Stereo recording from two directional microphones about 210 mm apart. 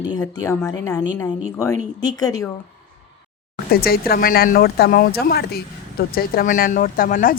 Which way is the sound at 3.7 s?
45° left (ahead or behind).